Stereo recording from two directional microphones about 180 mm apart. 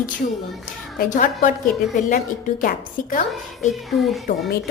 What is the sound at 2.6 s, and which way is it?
Speech, 50° left (ahead or behind).